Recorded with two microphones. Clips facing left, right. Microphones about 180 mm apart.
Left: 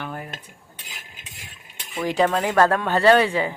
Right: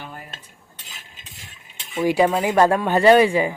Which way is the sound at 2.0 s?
10° right (ahead or behind).